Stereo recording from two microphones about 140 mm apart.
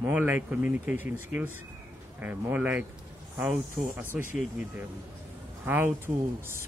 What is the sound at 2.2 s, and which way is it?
Speech, 10° right (ahead or behind).